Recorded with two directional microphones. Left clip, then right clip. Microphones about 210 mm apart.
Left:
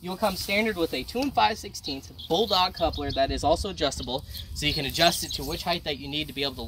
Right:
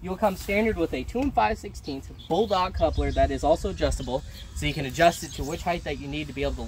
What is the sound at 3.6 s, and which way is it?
Speech, 25° right (ahead or behind).